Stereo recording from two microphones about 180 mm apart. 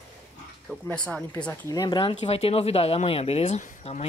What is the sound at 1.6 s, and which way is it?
Speech, 20° left (ahead or behind).